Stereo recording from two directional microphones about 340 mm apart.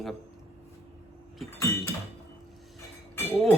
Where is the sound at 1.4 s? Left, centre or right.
Centre.